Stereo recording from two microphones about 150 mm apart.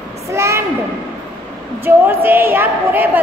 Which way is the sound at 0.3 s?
20° right (ahead or behind).